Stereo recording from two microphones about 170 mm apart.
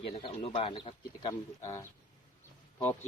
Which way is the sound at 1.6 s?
15° left (ahead or behind).